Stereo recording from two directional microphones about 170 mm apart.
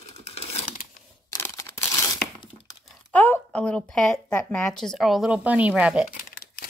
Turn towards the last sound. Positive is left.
turn(degrees=55)  # may be behind; listen again after turning